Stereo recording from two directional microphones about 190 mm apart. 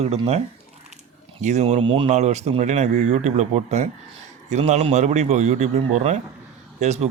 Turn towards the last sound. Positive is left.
turn(degrees=-35)  # may be behind; listen again after turning